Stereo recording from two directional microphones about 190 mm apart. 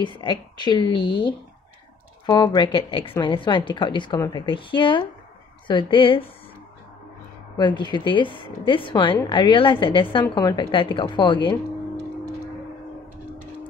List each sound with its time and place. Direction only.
0.0 s a woman's voice: 25° left (ahead or behind)
7.5 s a woman's voice: 25° left (ahead or behind)